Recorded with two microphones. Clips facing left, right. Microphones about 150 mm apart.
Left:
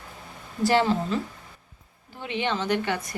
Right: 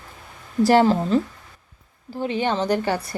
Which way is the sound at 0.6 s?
40° right (ahead or behind).